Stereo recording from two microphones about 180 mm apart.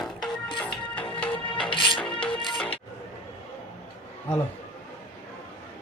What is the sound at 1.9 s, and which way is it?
Music, 5° left (ahead or behind).